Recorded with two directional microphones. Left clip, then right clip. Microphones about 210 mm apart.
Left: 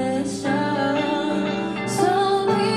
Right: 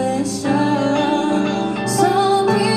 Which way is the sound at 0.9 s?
50° right (ahead or behind).